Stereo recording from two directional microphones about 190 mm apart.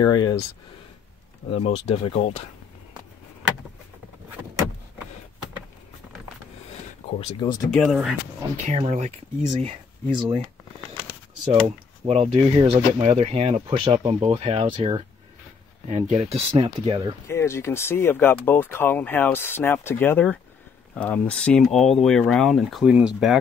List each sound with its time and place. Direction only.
0.0 s speech: 20° left (ahead or behind)
1.6 s speech: 30° left (ahead or behind)
7.1 s speech: 30° left (ahead or behind)
7.7 s speech: centre (ahead or behind)
8.6 s speech: 35° right (ahead or behind)
11.6 s speech: 30° right (ahead or behind)
16.1 s speech: 35° right (ahead or behind)
17.3 s speech: 15° left (ahead or behind); by 23.3 s 5° right (ahead or behind)